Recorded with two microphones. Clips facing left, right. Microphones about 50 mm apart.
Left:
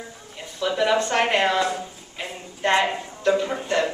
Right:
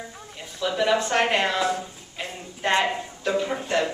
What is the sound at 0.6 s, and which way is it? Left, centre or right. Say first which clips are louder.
A woman's voice: left 1 dB; centre.